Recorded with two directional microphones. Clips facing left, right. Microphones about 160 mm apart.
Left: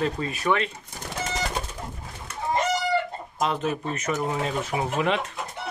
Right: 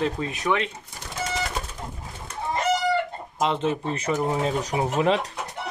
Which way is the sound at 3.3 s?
25° right (ahead or behind).